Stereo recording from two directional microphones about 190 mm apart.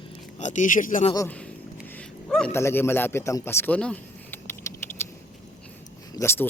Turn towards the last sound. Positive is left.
turn(degrees=10)  # may be behind; listen again after turning